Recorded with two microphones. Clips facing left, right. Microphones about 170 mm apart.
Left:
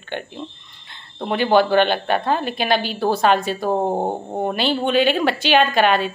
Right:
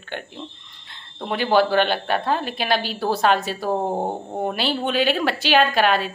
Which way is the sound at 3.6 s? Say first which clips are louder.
Left 2 dB; 20° left (ahead or behind).